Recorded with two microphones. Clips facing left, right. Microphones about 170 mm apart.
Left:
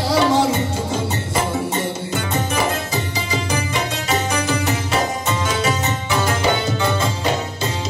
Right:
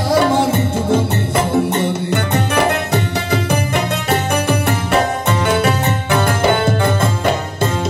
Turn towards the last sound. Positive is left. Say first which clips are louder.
# right 4 dB
turn(degrees=-55)  # may be behind; listen again after turning